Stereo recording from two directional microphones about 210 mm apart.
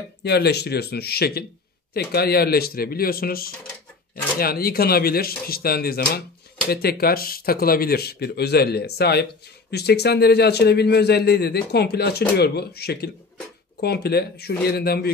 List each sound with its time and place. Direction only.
0.2 s a man's voice: 50° left (ahead or behind)